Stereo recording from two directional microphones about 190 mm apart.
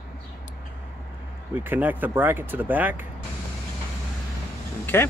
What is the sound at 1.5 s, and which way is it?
Speech, 10° right (ahead or behind).